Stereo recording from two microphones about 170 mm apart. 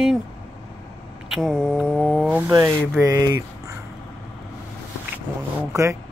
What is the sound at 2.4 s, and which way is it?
Speech, 15° right (ahead or behind).